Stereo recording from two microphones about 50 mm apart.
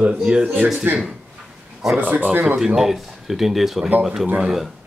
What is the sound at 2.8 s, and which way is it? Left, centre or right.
Speech, centre.